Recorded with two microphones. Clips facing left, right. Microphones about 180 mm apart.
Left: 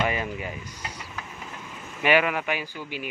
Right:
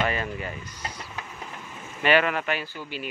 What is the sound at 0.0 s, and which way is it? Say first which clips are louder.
Speech: even; 15° left (ahead or behind).